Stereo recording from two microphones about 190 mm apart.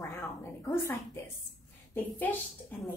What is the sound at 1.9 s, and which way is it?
Speech, 10° left (ahead or behind).